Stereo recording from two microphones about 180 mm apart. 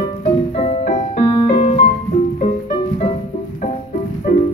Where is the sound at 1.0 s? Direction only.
30° left (ahead or behind); by 4.4 s 50° left (ahead or behind).